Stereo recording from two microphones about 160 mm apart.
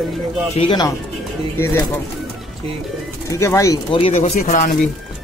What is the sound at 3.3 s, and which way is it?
Speech, 20° left (ahead or behind).